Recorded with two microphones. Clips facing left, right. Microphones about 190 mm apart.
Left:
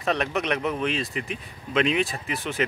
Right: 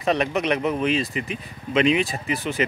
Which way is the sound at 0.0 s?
Centre (ahead or behind).